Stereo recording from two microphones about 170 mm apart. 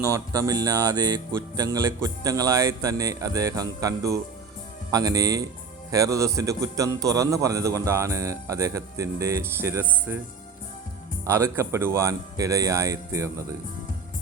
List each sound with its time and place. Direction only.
0.0 s a man's voice: 20° right (ahead or behind)
11.3 s speech: 15° right (ahead or behind)